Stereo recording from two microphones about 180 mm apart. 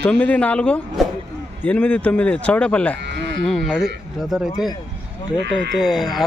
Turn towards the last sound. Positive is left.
turn(degrees=0)  # may be behind; listen again after turning